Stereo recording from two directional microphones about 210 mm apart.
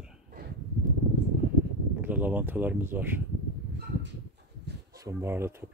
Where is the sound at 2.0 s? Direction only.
10° right (ahead or behind).